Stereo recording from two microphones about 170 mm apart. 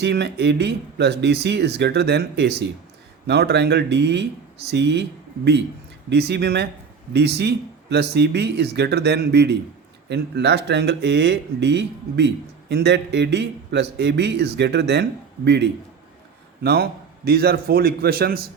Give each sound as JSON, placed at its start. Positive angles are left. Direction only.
{"t": 0.0, "sound": "speech", "side_deg": -85}
{"t": 6.1, "sound": "speech", "side_deg": -80}
{"t": 17.2, "sound": "a man's voice", "side_deg": -65}